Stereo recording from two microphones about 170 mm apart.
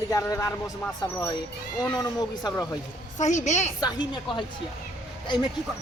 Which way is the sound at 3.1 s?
45° left (ahead or behind).